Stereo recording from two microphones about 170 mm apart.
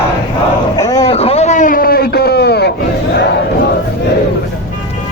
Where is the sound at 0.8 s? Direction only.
20° left (ahead or behind).